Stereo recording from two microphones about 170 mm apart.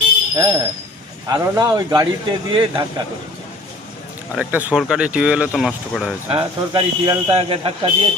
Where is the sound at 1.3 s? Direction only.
25° right (ahead or behind).